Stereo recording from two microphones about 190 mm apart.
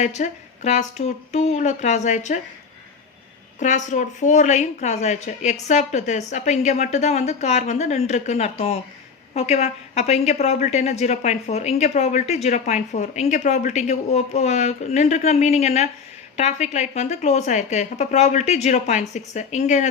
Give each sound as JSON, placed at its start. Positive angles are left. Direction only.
{"t": 0.0, "sound": "a woman's voice", "side_deg": 40}
{"t": 3.6, "sound": "a woman's voice", "side_deg": 40}